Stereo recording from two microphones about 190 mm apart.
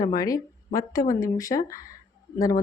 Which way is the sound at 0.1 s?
20° left (ahead or behind).